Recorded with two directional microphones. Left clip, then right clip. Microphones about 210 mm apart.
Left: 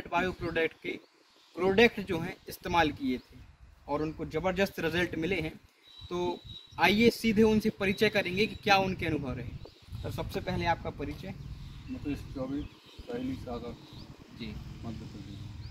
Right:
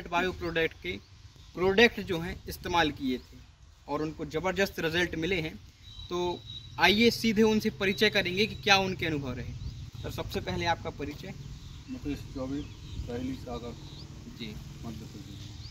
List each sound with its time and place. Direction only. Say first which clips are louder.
0.1 s speech: right 1 dB; 15° left (ahead or behind)
12.4 s speech: even; centre (ahead or behind)